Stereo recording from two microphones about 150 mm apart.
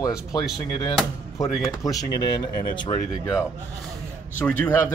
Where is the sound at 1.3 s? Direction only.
20° left (ahead or behind).